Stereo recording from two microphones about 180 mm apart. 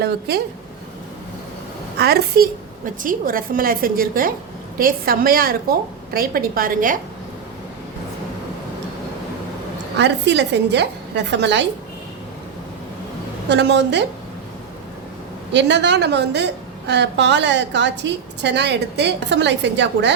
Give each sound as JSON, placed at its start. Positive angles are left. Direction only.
{"t": 0.0, "sound": "a woman's voice", "side_deg": -65}
{"t": 2.0, "sound": "a woman's voice", "side_deg": -60}
{"t": 10.0, "sound": "a woman's voice", "side_deg": -75}
{"t": 13.5, "sound": "a woman's voice", "side_deg": -75}
{"t": 15.5, "sound": "a woman's voice", "side_deg": -75}